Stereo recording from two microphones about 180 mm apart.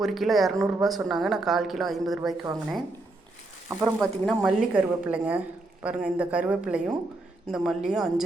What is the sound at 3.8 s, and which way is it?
Speech, centre (ahead or behind).